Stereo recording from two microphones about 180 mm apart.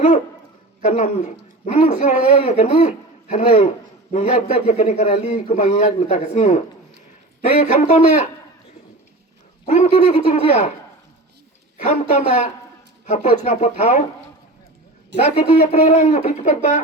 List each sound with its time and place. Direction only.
0.8 s a man's voice: 40° left (ahead or behind)
9.6 s a man's voice: 40° left (ahead or behind)
11.9 s a man's voice: 40° left (ahead or behind)
15.7 s a man's voice: 40° left (ahead or behind)